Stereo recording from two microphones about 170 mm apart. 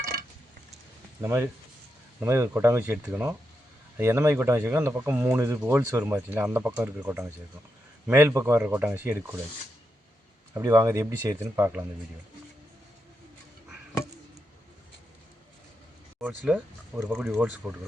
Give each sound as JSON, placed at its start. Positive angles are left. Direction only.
{"t": 1.2, "sound": "speech", "side_deg": -15}
{"t": 10.5, "sound": "speech", "side_deg": -15}
{"t": 16.4, "sound": "speech", "side_deg": -5}